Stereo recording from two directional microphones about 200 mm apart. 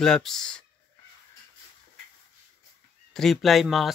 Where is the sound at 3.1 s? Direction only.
Centre (ahead or behind).